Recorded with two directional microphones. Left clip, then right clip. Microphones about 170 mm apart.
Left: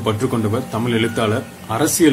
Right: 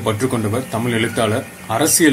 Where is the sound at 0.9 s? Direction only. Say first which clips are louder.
Right 1 dB; 5° right (ahead or behind).